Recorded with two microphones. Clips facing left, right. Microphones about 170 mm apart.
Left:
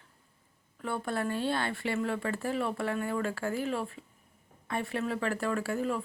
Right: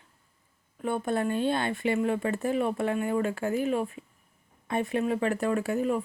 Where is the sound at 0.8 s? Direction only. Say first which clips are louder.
Right 5 dB; 20° right (ahead or behind).